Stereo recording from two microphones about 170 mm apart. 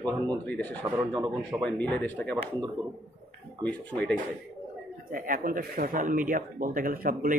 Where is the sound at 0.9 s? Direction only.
25° right (ahead or behind).